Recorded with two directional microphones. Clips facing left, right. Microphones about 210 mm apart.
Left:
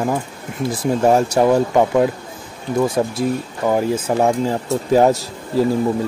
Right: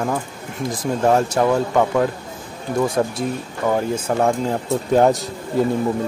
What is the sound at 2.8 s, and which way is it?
Speech, centre (ahead or behind).